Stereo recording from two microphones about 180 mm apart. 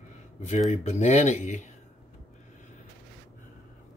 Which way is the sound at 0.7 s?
40° left (ahead or behind).